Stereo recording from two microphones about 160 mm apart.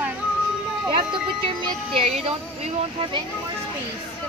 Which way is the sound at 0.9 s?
35° right (ahead or behind).